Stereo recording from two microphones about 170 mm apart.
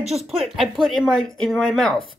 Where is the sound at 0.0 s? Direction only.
35° right (ahead or behind).